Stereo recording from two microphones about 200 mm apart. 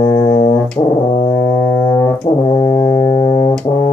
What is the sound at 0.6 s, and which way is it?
Brass instrument, 5° left (ahead or behind).